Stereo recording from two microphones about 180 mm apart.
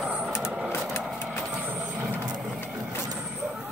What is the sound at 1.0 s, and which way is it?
Vehicle, 5° right (ahead or behind).